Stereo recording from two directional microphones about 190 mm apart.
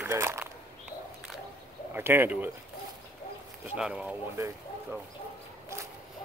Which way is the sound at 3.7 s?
5° right (ahead or behind).